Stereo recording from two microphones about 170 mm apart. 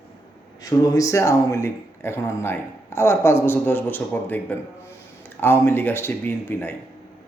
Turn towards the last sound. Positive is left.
turn(degrees=10)  # may be behind; listen again after turning